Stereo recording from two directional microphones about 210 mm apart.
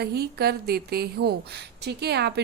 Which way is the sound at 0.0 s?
50° right (ahead or behind).